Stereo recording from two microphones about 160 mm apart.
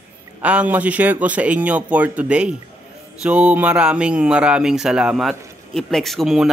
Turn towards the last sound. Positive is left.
turn(degrees=0)  # may be behind; listen again after turning